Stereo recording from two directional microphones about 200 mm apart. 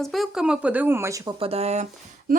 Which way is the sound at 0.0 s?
Centre (ahead or behind).